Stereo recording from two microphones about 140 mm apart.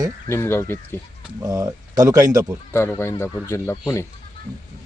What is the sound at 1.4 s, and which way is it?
Speech, 25° right (ahead or behind).